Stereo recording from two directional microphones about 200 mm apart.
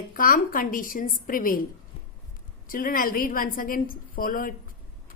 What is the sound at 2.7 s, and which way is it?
A woman's voice, 45° left (ahead or behind).